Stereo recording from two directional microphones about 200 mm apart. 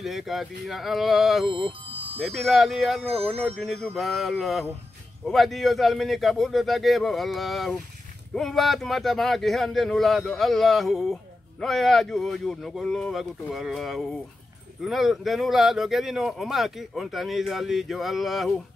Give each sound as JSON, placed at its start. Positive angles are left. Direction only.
{"t": 0.0, "sound": "speech", "side_deg": 0}
{"t": 1.9, "sound": "music", "side_deg": -25}
{"t": 2.2, "sound": "speech", "side_deg": 0}